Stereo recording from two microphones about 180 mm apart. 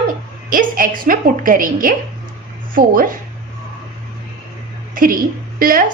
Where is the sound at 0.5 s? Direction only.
50° right (ahead or behind).